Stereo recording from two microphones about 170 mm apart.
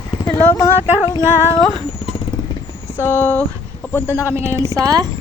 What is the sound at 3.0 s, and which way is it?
Speech, 15° left (ahead or behind).